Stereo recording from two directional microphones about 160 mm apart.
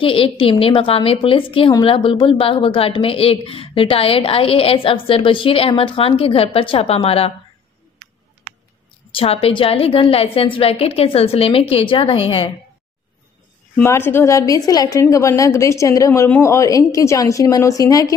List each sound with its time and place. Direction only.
0.0 s speech: 35° left (ahead or behind)
9.1 s speech: 35° left (ahead or behind)
13.7 s a woman's voice: 15° left (ahead or behind)